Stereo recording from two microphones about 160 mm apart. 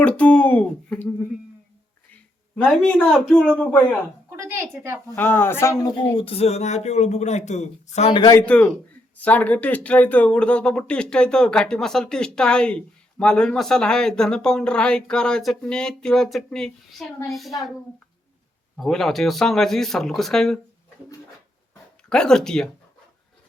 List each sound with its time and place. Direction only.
0.0 s speech: 5° left (ahead or behind)
2.6 s speech: 5° left (ahead or behind)
4.4 s speech: 15° right (ahead or behind)
5.1 s speech: 15° left (ahead or behind)
6.1 s speech: 35° left (ahead or behind)
8.1 s speech: 25° left (ahead or behind)
8.4 s speech: 10° left (ahead or behind)
18.8 s speech: centre (ahead or behind)
22.1 s speech: 5° left (ahead or behind)